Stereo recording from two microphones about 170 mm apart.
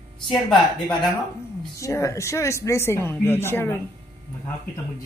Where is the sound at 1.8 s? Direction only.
15° left (ahead or behind).